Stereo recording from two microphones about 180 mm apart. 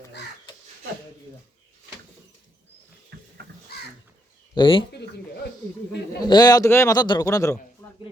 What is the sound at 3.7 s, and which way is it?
Crow, 60° left (ahead or behind).